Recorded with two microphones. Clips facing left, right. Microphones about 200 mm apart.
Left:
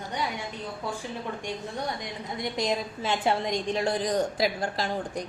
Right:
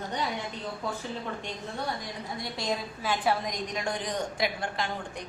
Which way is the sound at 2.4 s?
20° left (ahead or behind).